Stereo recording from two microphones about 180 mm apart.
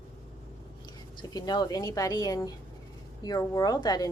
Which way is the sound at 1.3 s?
20° left (ahead or behind).